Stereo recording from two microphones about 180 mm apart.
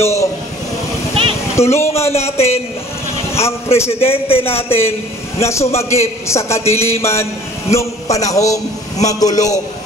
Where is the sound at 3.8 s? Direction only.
35° left (ahead or behind).